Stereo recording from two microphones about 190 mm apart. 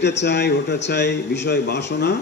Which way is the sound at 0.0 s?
65° left (ahead or behind).